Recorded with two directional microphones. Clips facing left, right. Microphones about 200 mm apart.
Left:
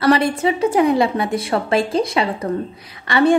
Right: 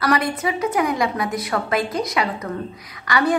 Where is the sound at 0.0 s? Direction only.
30° left (ahead or behind).